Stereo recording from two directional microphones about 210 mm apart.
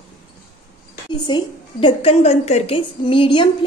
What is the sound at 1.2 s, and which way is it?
A woman's voice, 25° left (ahead or behind).